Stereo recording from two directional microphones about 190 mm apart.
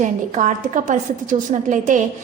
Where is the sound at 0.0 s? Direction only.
40° right (ahead or behind).